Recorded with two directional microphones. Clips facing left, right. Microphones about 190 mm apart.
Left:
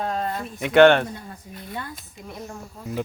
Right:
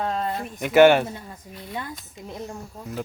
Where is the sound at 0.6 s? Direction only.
5° right (ahead or behind).